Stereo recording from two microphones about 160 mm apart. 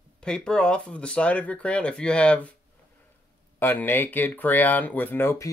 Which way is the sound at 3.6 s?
10° left (ahead or behind).